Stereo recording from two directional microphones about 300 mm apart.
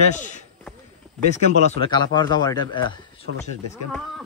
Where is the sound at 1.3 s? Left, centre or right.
Left.